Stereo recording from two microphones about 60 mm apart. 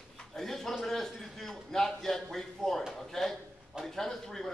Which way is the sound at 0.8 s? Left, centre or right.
Centre.